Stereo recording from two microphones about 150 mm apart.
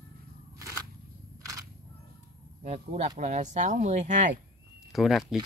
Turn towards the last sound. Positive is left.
turn(degrees=0)  # may be behind; listen again after turning